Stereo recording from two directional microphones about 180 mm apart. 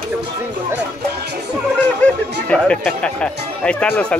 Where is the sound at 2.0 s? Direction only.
5° left (ahead or behind).